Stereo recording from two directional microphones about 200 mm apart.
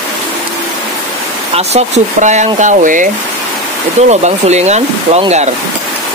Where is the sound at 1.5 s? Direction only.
35° right (ahead or behind).